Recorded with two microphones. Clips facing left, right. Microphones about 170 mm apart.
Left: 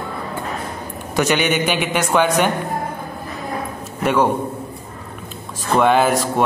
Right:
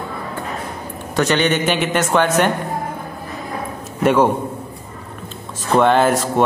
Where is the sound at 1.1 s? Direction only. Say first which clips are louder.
Right 1 dB; 10° left (ahead or behind).